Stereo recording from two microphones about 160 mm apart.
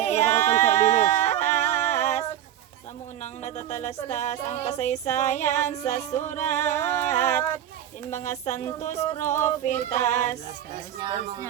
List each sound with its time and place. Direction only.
0.0 s singing: 45° left (ahead or behind)
0.5 s a sound: 45° left (ahead or behind)
3.4 s music: 45° left (ahead or behind)
6.7 s female singing: 15° left (ahead or behind)
7.0 s music: 45° left (ahead or behind)
7.3 s female singing: 15° left (ahead or behind)
8.2 s music: 45° left (ahead or behind)
9.1 s female singing: 15° left (ahead or behind)
9.6 s music: 45° left (ahead or behind)
10.9 s speech: 30° right (ahead or behind)